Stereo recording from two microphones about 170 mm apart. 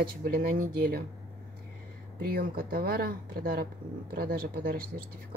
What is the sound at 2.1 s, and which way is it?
Speech, 60° right (ahead or behind).